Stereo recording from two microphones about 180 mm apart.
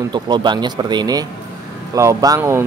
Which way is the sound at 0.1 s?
25° right (ahead or behind).